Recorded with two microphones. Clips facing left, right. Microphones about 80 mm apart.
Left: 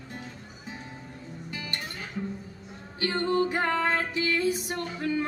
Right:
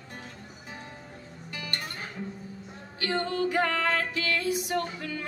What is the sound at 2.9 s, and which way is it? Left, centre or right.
Music, left.